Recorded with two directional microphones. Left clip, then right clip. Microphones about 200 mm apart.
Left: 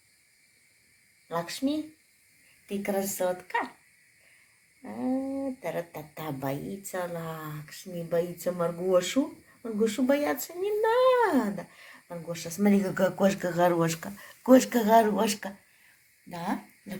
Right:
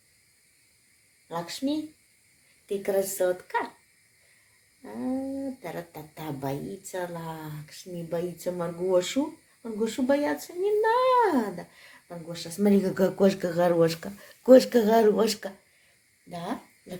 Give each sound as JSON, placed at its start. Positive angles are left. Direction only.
{"t": 1.3, "sound": "speech", "side_deg": -5}
{"t": 2.6, "sound": "speech", "side_deg": -15}
{"t": 5.6, "sound": "speech", "side_deg": -10}
{"t": 16.3, "sound": "speech", "side_deg": -5}